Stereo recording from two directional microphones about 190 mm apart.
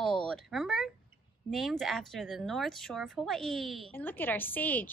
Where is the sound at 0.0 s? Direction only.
5° left (ahead or behind).